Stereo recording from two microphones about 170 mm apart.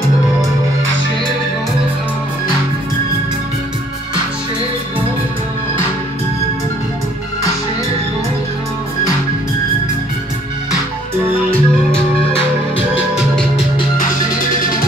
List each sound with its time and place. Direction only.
11.5 s music: 5° left (ahead or behind)
14.6 s music: 55° left (ahead or behind)